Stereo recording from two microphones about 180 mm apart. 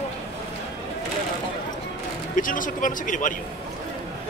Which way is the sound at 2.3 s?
50° left (ahead or behind).